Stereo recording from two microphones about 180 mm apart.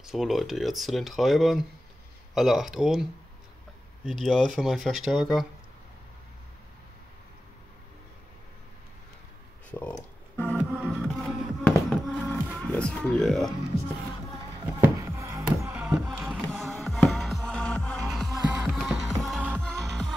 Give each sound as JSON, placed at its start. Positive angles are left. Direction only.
{"t": 0.0, "sound": "speech", "side_deg": 0}
{"t": 4.2, "sound": "speech", "side_deg": 0}
{"t": 9.7, "sound": "speech", "side_deg": 10}
{"t": 10.3, "sound": "music", "side_deg": 5}
{"t": 14.8, "sound": "music", "side_deg": -15}
{"t": 16.1, "sound": "music", "side_deg": 0}